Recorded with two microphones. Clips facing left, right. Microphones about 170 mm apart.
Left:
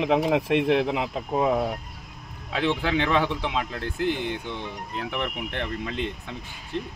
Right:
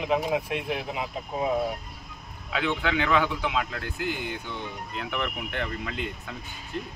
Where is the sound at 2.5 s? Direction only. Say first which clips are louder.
Left 3 dB; 30° left (ahead or behind).